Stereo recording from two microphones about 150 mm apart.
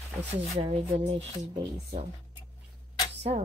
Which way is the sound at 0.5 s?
40° right (ahead or behind).